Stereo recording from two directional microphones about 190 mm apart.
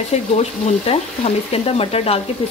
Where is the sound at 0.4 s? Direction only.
35° left (ahead or behind).